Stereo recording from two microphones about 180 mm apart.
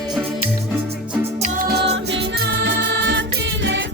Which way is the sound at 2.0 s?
80° right.